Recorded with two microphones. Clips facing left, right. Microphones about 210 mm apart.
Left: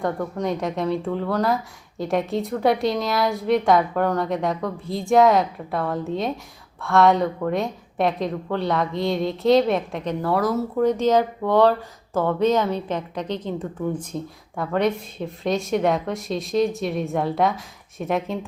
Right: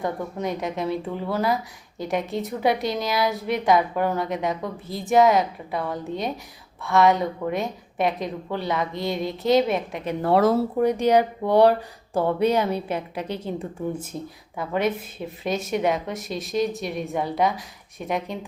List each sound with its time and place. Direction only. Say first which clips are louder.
0.0 s speech: left 2 dB; 5° right (ahead or behind)
10.2 s speech: right 4 dB; 25° right (ahead or behind)
10.8 s speech: left 4 dB; 15° right (ahead or behind)